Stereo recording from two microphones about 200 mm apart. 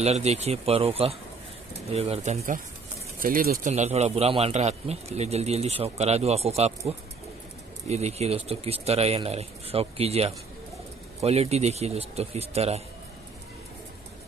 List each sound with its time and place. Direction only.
0.0 s a man's voice: 35° right (ahead or behind)
7.9 s a man's voice: 30° right (ahead or behind)